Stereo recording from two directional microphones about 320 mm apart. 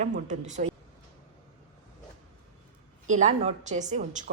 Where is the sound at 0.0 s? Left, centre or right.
Right.